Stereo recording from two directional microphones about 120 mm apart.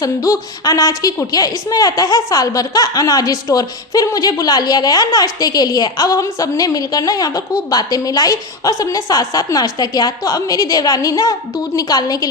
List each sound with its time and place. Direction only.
0.0 s a woman's voice: 30° left (ahead or behind)